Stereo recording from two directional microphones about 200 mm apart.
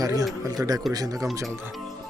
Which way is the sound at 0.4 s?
15° right (ahead or behind).